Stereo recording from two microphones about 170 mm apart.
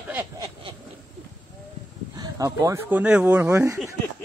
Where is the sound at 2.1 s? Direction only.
20° right (ahead or behind).